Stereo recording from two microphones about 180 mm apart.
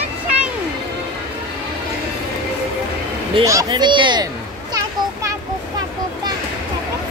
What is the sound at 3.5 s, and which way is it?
Speech, 20° right (ahead or behind).